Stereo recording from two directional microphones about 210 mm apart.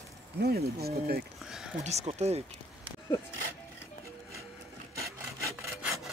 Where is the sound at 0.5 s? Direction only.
45° right (ahead or behind).